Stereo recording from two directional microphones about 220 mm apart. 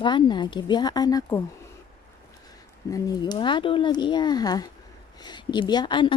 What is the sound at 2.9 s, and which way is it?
Speech, 20° left (ahead or behind).